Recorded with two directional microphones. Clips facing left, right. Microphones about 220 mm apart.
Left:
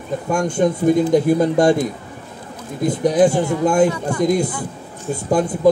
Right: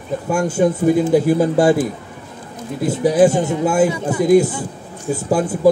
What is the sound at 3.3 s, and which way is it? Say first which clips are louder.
Speech: even; 20° right (ahead or behind).